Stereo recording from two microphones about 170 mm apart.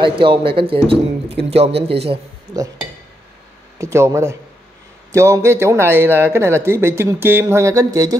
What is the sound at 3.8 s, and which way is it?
Speech, 15° right (ahead or behind).